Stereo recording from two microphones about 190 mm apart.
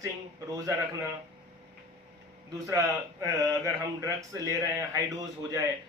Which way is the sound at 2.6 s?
15° right (ahead or behind).